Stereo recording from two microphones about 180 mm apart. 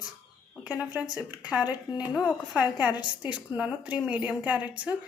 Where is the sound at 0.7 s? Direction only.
20° left (ahead or behind).